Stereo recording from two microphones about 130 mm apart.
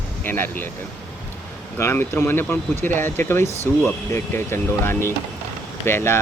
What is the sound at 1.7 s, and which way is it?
Speech, 20° left (ahead or behind).